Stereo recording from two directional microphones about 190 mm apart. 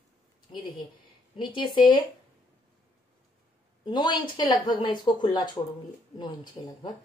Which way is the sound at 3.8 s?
25° left (ahead or behind).